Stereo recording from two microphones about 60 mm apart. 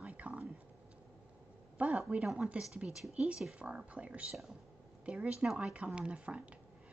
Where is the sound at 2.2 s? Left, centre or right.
Centre.